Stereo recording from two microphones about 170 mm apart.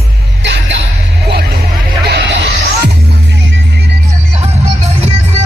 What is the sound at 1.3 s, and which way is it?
Vehicle, 70° right (ahead or behind).